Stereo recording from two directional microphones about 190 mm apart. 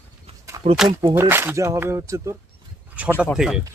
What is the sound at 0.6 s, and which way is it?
Speech, 35° right (ahead or behind).